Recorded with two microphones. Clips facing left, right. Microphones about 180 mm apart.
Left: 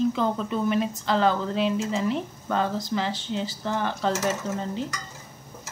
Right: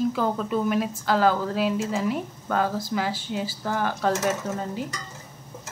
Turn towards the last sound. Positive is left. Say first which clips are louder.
# even
turn(degrees=-5)  # may be behind; listen again after turning